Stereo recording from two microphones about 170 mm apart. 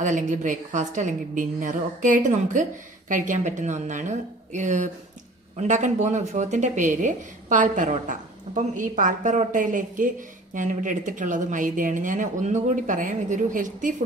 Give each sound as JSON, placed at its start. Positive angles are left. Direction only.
{"t": 0.0, "sound": "speech", "side_deg": -50}